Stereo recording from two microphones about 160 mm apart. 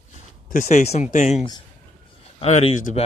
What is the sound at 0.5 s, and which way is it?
Speech, 55° left (ahead or behind).